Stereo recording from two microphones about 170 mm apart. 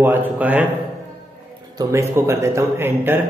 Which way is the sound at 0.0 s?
10° right (ahead or behind).